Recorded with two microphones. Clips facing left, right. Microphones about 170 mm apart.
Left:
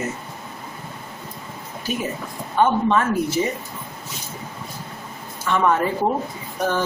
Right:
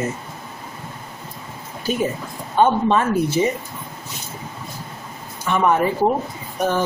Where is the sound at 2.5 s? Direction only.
25° right (ahead or behind).